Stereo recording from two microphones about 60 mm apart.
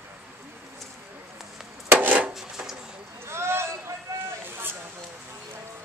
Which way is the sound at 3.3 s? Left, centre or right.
Right.